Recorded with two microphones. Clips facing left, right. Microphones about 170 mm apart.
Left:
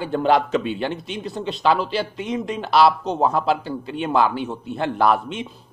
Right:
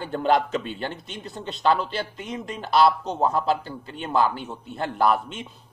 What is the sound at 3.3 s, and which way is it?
Speech, 40° right (ahead or behind).